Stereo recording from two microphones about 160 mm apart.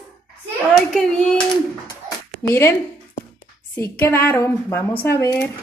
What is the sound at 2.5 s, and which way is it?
Speech, 15° left (ahead or behind).